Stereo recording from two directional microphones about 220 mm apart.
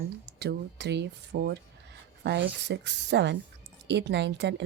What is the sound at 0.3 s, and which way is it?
Speech, 50° right (ahead or behind).